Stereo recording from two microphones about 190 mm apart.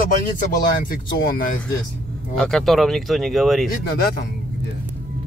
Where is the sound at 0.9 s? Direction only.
50° left (ahead or behind).